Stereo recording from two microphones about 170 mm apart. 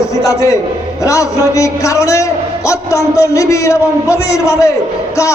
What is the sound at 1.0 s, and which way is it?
A man's voice, 20° left (ahead or behind).